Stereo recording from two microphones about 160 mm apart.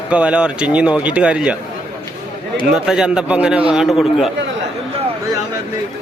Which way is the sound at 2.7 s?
5° right (ahead or behind).